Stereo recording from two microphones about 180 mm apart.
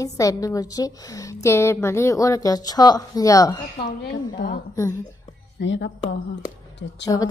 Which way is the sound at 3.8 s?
65° left (ahead or behind).